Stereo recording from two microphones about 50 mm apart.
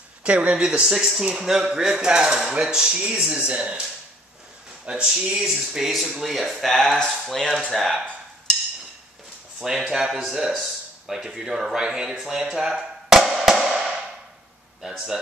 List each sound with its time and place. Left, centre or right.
0.2 s speech: right
5.0 s speech: centre
9.6 s speech: centre
10.5 s a sound: centre
11.1 s speech: centre